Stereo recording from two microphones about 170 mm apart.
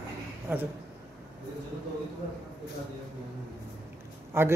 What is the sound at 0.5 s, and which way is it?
Speech, 10° right (ahead or behind).